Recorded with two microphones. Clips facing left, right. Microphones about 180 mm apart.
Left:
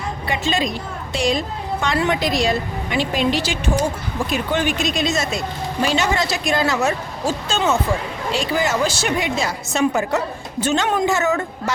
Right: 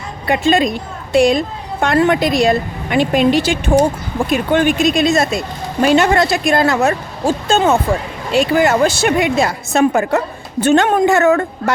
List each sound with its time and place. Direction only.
0.3 s a woman's voice: 55° right (ahead or behind)